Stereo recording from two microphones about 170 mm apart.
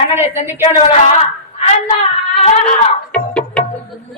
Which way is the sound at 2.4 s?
40° left (ahead or behind).